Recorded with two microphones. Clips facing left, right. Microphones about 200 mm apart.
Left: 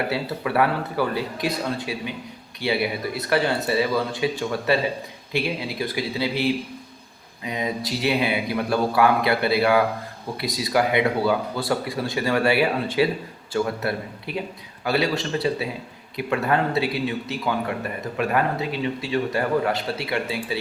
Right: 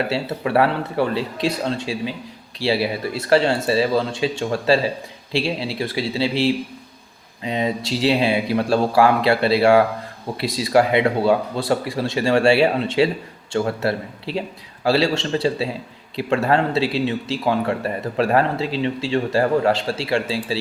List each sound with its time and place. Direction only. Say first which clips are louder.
0.1 s speech: right 4 dB; 25° right (ahead or behind)